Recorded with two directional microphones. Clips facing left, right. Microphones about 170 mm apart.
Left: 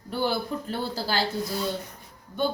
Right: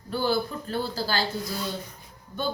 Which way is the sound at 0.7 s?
25° left (ahead or behind).